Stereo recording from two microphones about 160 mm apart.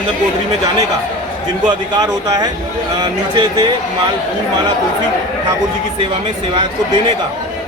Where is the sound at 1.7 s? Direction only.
25° right (ahead or behind).